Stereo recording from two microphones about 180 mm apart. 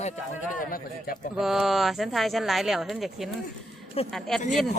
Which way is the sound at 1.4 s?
Centre (ahead or behind).